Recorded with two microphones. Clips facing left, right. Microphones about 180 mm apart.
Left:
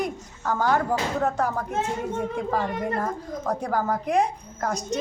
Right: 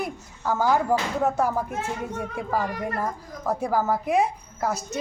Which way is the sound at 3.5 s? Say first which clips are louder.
Right 2 dB; 5° right (ahead or behind).